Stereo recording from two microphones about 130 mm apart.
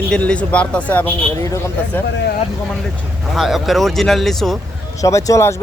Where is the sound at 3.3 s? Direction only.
Centre (ahead or behind).